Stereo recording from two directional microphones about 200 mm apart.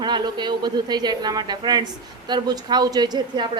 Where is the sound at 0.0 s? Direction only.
20° right (ahead or behind).